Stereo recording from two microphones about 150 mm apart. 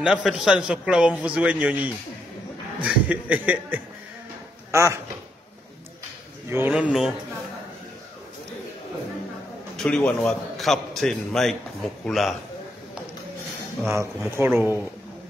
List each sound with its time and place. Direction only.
0.0 s a man's voice: 5° right (ahead or behind)
6.5 s speech: 10° right (ahead or behind)
9.8 s a man's voice: 5° left (ahead or behind)
14.3 s speech: 15° right (ahead or behind)